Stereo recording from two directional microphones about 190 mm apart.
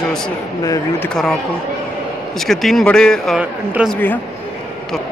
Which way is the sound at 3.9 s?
10° left (ahead or behind).